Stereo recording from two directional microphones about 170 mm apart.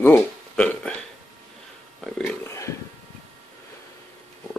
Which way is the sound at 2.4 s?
15° left (ahead or behind).